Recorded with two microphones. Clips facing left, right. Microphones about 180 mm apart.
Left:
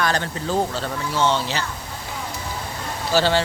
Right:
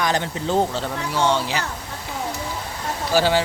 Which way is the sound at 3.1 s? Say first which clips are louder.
Even; 10° right (ahead or behind).